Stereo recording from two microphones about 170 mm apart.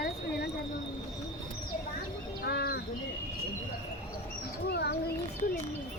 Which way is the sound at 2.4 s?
70° left (ahead or behind).